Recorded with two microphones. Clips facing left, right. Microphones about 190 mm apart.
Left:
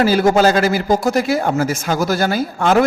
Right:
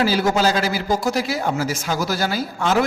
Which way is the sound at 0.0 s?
50° left (ahead or behind).